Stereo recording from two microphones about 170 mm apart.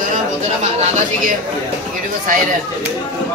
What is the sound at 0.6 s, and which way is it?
Speech, 40° right (ahead or behind).